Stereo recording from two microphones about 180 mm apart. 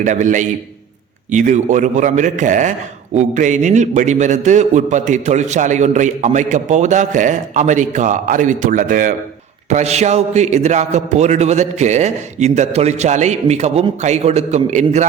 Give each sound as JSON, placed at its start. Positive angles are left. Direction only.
{"t": 0.0, "sound": "a man's voice", "side_deg": -45}
{"t": 9.6, "sound": "a man's voice", "side_deg": -40}